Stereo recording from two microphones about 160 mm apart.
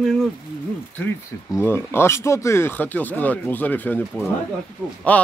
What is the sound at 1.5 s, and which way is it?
A man's voice, 15° left (ahead or behind).